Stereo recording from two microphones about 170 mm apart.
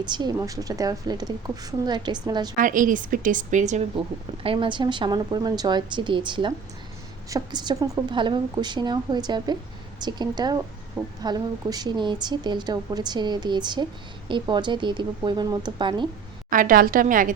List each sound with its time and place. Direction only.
0.0 s a woman's voice: 25° right (ahead or behind)
2.6 s a woman's voice: 50° right (ahead or behind)
4.4 s a woman's voice: 30° right (ahead or behind)
16.5 s a woman's voice: 55° right (ahead or behind)